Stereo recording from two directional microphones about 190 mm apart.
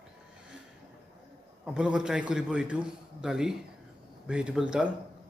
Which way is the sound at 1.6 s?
5° right (ahead or behind).